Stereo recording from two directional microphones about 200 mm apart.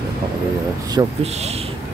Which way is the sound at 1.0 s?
20° right (ahead or behind).